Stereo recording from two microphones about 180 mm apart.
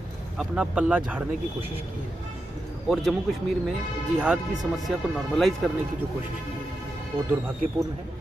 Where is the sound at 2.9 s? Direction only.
Centre (ahead or behind).